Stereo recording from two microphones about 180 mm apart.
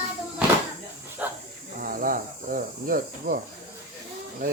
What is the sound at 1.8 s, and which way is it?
Cricket, 50° right (ahead or behind).